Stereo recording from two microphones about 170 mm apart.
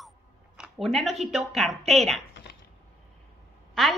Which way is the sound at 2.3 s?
90° left.